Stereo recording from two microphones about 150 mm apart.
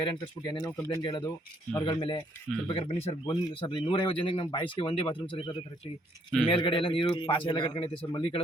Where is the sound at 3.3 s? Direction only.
35° left (ahead or behind).